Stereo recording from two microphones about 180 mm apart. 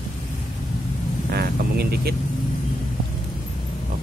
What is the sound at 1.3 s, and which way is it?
Vehicle, 60° right (ahead or behind).